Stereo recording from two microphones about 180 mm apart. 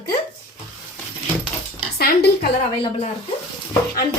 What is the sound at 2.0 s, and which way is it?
Speech, 60° left (ahead or behind).